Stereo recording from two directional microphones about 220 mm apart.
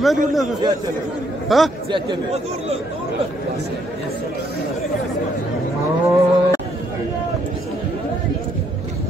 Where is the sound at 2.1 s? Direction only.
30° right (ahead or behind).